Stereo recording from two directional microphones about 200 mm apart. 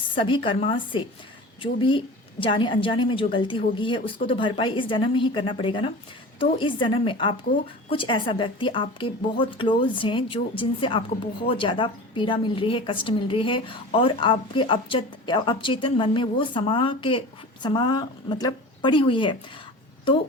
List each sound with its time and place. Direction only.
0.1 s a woman's voice: 25° left (ahead or behind)